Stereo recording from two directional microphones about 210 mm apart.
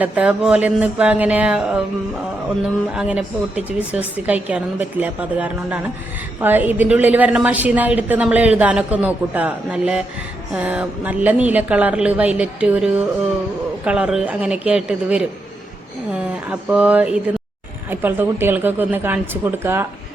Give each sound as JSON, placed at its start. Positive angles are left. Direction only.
{"t": 0.0, "sound": "a woman's voice", "side_deg": -5}
{"t": 2.9, "sound": "a woman's voice", "side_deg": -5}